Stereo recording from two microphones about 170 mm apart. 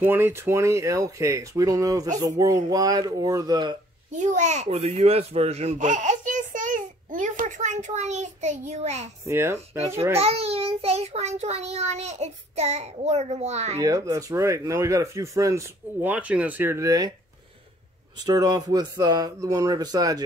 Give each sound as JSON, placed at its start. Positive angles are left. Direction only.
{"t": 0.0, "sound": "speech", "side_deg": -15}
{"t": 4.2, "sound": "a child's voice", "side_deg": -45}
{"t": 9.2, "sound": "speech", "side_deg": -15}
{"t": 10.1, "sound": "child singing", "side_deg": -35}
{"t": 13.7, "sound": "speech", "side_deg": -20}
{"t": 18.2, "sound": "speech", "side_deg": -20}